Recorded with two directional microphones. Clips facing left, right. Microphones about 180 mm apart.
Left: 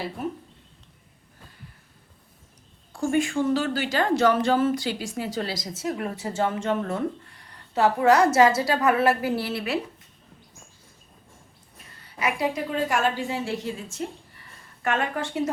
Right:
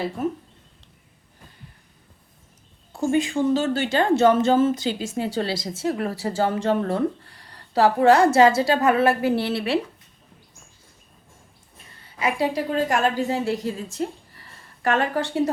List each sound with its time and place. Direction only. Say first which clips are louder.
2.9 s a woman's voice: right 2 dB; 20° right (ahead or behind)
12.2 s a woman's voice: right 3 dB; 30° right (ahead or behind)